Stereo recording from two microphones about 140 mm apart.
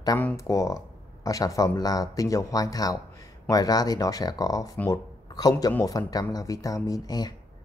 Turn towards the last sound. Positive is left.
turn(degrees=30)  # may be behind; listen again after turning